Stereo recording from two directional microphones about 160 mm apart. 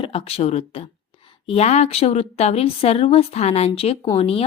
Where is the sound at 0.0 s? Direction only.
35° left (ahead or behind).